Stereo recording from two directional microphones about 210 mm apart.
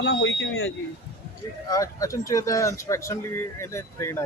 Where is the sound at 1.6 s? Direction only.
15° left (ahead or behind).